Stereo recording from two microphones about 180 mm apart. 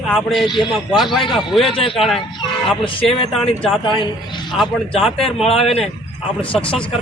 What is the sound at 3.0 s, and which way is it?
Speech, 35° left (ahead or behind).